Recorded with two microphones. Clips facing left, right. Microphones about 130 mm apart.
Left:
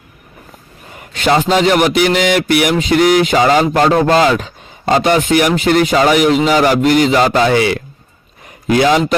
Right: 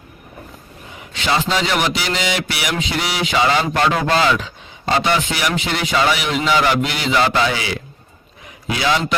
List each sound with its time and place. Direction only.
0.9 s a man's voice: 55° left (ahead or behind)